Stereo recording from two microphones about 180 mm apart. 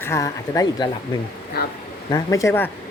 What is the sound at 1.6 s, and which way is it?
Speech, 60° left (ahead or behind).